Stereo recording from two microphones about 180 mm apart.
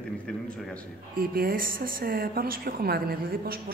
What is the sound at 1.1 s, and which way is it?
Speech, 55° right (ahead or behind).